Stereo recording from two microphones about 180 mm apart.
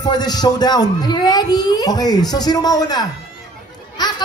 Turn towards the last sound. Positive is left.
turn(degrees=25)  # may be behind; listen again after turning